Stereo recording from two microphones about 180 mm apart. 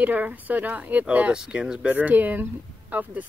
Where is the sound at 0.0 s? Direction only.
10° right (ahead or behind).